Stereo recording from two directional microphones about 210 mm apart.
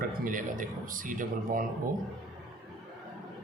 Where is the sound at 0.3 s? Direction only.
40° right (ahead or behind).